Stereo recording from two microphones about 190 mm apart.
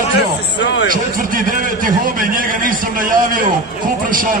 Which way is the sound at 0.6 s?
70° left (ahead or behind).